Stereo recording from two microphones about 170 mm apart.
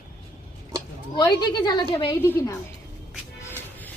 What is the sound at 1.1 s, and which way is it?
A woman's voice, 25° left (ahead or behind).